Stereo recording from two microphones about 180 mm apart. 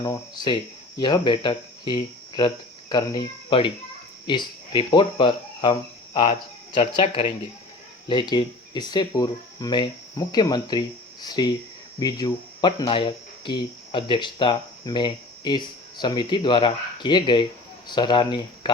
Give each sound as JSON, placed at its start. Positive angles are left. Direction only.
{"t": 0.0, "sound": "speech", "side_deg": 20}
{"t": 6.7, "sound": "speech", "side_deg": 30}